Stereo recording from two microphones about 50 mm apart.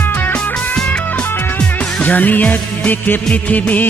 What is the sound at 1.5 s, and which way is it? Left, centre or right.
Music, left.